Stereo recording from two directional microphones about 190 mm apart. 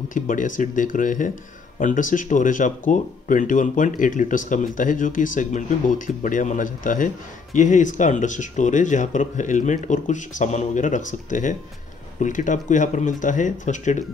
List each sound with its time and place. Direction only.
0.1 s speech: 45° left (ahead or behind)